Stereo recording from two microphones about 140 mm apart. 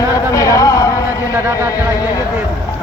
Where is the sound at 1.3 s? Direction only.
15° right (ahead or behind).